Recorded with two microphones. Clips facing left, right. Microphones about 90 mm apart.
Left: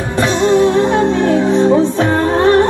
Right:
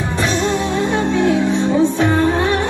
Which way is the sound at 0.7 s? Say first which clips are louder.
Left 5 dB; 40° left (ahead or behind).